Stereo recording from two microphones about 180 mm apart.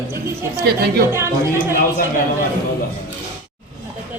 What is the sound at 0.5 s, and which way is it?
Speech, 60° right (ahead or behind).